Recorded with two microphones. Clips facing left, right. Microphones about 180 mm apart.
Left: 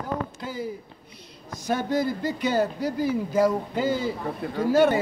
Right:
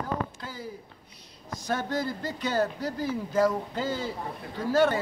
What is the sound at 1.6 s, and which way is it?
A man's voice, 15° left (ahead or behind).